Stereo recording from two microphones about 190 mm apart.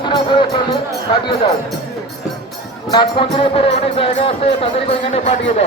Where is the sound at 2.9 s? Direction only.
25° left (ahead or behind).